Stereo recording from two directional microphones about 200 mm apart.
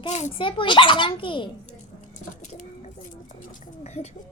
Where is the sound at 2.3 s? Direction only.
40° left (ahead or behind).